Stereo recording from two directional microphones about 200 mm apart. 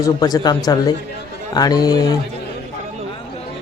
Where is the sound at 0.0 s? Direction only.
20° left (ahead or behind).